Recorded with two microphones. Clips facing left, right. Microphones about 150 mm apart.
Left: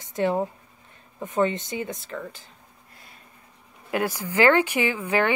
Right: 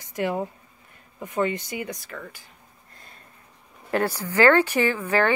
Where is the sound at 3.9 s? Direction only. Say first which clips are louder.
Right 1 dB; 15° left (ahead or behind).